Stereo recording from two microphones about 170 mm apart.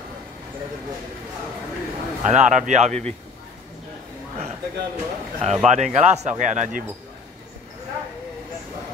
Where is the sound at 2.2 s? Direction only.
45° right (ahead or behind).